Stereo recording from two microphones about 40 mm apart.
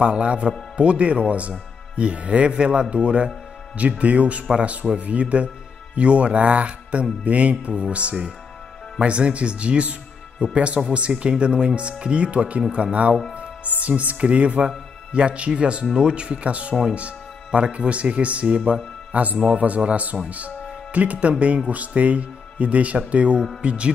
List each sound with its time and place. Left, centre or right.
0.0 s speech: right
4.0 s music: right
9.0 s speech: right
10.4 s music: right
10.9 s speech: right
13.7 s music: right
15.1 s speech: right
16.9 s music: right
20.2 s speech: right
21.6 s music: right